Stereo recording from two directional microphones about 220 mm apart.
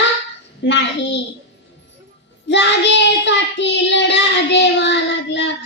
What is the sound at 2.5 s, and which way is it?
Child singing, 55° left (ahead or behind).